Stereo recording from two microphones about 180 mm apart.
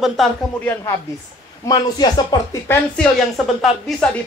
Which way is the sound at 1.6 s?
25° left (ahead or behind).